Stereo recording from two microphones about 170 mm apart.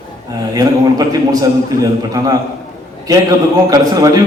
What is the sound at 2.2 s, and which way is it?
A man's voice, 20° right (ahead or behind).